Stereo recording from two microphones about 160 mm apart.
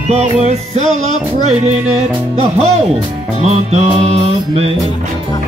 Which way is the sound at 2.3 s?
40° right (ahead or behind).